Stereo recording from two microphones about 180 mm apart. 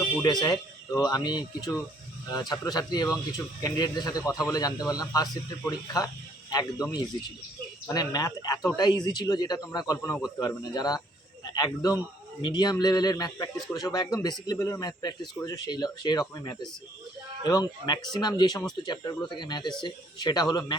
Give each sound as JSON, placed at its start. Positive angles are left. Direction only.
{"t": 0.0, "sound": "speech", "side_deg": 20}
{"t": 2.5, "sound": "speech", "side_deg": 20}